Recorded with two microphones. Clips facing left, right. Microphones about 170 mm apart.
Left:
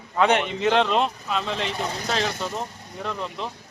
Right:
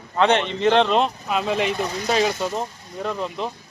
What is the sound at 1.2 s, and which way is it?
Speech, 10° right (ahead or behind).